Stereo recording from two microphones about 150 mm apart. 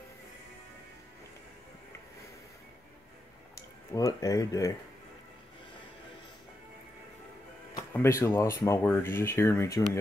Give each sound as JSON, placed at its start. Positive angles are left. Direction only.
{"t": 3.5, "sound": "speech", "side_deg": 20}
{"t": 7.9, "sound": "speech", "side_deg": 20}